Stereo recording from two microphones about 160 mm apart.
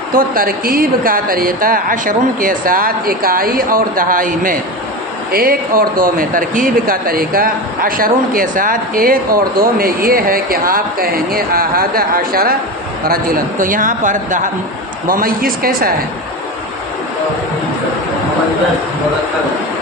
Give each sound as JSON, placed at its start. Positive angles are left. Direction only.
{"t": 0.1, "sound": "speech", "side_deg": -60}